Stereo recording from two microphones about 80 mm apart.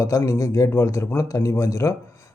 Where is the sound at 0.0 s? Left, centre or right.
Left.